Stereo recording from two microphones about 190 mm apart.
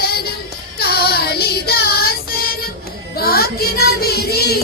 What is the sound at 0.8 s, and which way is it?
Child singing, 55° left (ahead or behind).